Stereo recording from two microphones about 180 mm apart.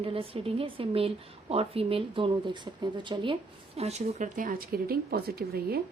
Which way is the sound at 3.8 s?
35° right (ahead or behind).